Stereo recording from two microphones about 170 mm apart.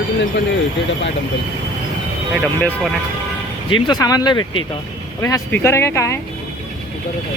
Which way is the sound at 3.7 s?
25° left (ahead or behind).